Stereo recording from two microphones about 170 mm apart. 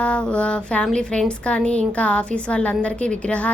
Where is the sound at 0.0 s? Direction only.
5° left (ahead or behind).